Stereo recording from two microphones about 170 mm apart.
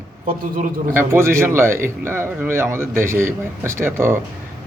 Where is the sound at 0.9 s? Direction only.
15° right (ahead or behind).